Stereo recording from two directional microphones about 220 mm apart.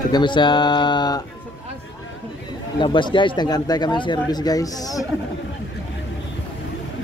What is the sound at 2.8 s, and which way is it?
Speech, 20° left (ahead or behind).